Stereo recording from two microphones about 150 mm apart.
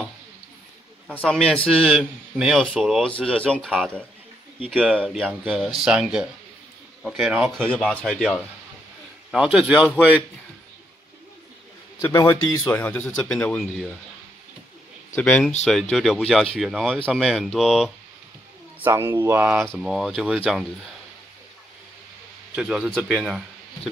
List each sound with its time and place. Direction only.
1.0 s a man's voice: 5° left (ahead or behind)
12.0 s a man's voice: 20° left (ahead or behind)
15.1 s a man's voice: 10° left (ahead or behind)
18.8 s speech: 15° right (ahead or behind)
19.7 s a man's voice: 5° right (ahead or behind)
22.6 s speech: 5° right (ahead or behind)